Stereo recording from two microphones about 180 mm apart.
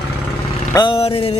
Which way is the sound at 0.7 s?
25° left (ahead or behind).